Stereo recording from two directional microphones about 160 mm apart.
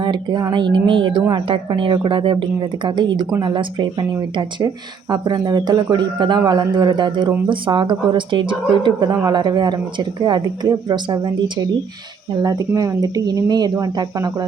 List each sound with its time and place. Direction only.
0.0 s a woman's voice: 30° right (ahead or behind)